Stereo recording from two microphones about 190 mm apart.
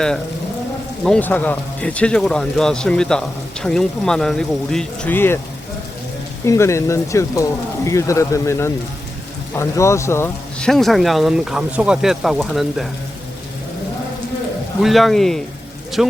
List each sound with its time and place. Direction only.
1.0 s speech: 5° left (ahead or behind)
6.4 s speech: 15° left (ahead or behind)
10.7 s speech: centre (ahead or behind)
14.8 s speech: centre (ahead or behind)